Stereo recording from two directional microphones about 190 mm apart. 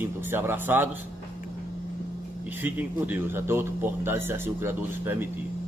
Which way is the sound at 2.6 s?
10° right (ahead or behind).